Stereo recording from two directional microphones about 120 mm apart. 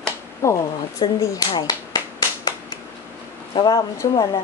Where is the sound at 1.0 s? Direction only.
40° left (ahead or behind).